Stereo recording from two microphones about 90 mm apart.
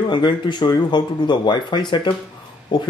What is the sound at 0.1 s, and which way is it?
Speech, 60° left (ahead or behind).